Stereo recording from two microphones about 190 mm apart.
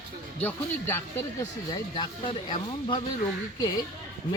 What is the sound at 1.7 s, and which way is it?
Speech, 25° left (ahead or behind).